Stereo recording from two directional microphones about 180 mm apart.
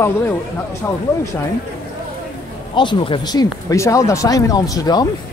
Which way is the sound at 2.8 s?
25° left (ahead or behind).